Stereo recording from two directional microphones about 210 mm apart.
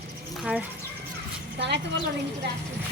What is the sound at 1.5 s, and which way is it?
Speech, 55° right (ahead or behind).